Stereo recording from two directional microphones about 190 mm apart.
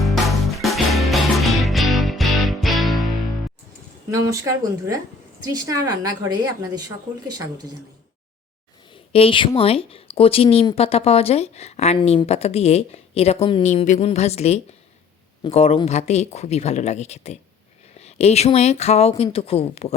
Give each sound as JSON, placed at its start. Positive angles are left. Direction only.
{"t": 0.0, "sound": "music", "side_deg": 0}
{"t": 4.1, "sound": "speech", "side_deg": -15}
{"t": 9.1, "sound": "a woman's voice", "side_deg": 30}